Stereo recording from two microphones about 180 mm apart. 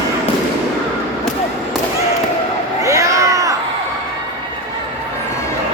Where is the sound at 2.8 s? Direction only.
15° right (ahead or behind).